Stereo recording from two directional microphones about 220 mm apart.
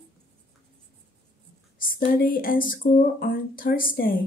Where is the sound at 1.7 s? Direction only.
40° left (ahead or behind).